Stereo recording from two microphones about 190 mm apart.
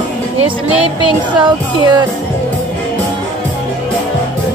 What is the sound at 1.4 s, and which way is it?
Music, 20° right (ahead or behind).